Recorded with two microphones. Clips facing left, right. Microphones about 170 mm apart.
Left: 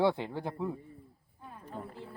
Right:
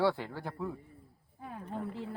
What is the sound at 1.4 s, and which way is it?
Roaring cats, 90° right.